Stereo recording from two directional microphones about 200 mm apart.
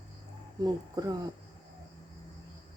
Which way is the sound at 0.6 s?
20° right (ahead or behind).